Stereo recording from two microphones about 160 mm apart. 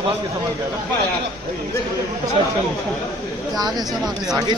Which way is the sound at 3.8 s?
Centre (ahead or behind).